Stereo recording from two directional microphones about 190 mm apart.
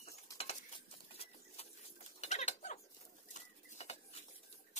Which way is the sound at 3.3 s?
35° left (ahead or behind).